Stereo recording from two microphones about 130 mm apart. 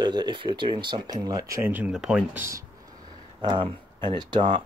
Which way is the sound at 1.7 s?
10° right (ahead or behind).